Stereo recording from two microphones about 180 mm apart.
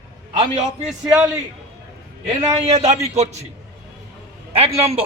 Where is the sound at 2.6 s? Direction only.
35° right (ahead or behind).